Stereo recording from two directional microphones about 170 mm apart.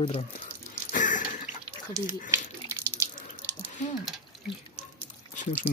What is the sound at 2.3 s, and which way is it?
Water tap, 15° right (ahead or behind).